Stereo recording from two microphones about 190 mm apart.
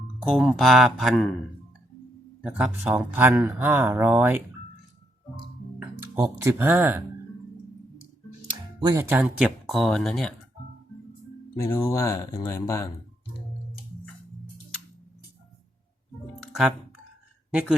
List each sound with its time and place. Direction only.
0.2 s speech: centre (ahead or behind)
2.4 s speech: 5° right (ahead or behind)
6.4 s speech: 10° right (ahead or behind)
8.4 s speech: 20° right (ahead or behind)
9.6 s speech: centre (ahead or behind)
11.7 s speech: 15° left (ahead or behind)
17.5 s speech: 5° right (ahead or behind)